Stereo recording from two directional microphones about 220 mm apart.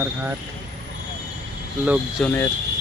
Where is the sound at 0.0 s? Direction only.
10° right (ahead or behind).